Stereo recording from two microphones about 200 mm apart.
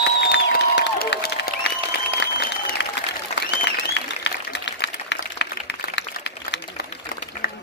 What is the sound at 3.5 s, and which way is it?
Applause, 60° left (ahead or behind).